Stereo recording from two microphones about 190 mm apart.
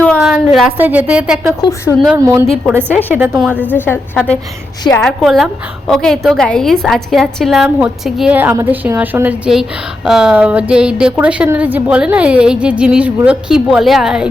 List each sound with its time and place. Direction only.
0.2 s a woman's voice: centre (ahead or behind)
1.6 s a woman's voice: 15° left (ahead or behind)
2.1 s a woman's voice: 15° right (ahead or behind)
3.7 s a woman's voice: 10° left (ahead or behind)